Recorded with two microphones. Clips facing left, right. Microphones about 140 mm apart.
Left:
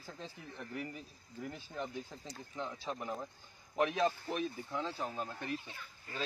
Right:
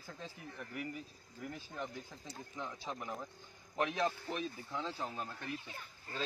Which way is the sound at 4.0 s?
15° left (ahead or behind).